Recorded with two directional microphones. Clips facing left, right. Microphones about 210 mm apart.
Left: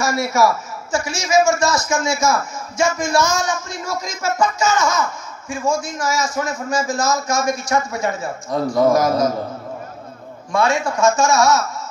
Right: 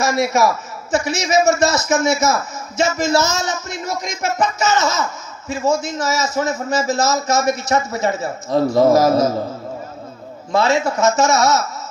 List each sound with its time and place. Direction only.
0.0 s a man's voice: 20° right (ahead or behind)
10.5 s a man's voice: 25° right (ahead or behind)